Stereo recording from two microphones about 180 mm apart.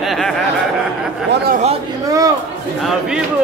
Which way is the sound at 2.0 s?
20° right (ahead or behind).